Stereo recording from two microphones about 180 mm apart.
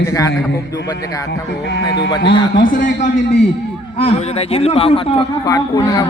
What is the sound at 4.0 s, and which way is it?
A man's voice, 35° left (ahead or behind).